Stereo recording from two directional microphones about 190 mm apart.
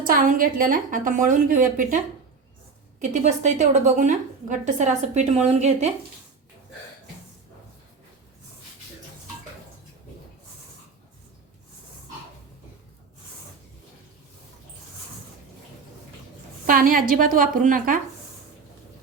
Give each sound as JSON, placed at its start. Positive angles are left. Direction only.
{"t": 0.0, "sound": "a woman's voice", "side_deg": -45}
{"t": 3.0, "sound": "a woman's voice", "side_deg": -40}
{"t": 16.6, "sound": "a woman's voice", "side_deg": -45}